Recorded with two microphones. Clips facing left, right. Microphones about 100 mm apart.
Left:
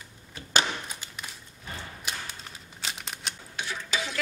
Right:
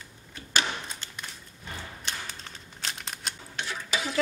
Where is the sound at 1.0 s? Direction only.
10° left (ahead or behind).